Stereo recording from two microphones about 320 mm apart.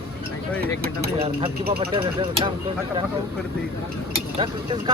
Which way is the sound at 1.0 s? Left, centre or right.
Centre.